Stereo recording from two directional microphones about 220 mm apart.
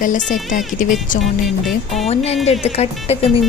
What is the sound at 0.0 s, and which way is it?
Speech, 35° left (ahead or behind).